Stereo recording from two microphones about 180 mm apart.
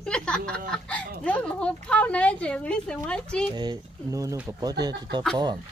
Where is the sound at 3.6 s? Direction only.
20° right (ahead or behind).